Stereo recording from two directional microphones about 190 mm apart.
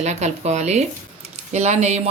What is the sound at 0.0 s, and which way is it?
Speech, 35° right (ahead or behind).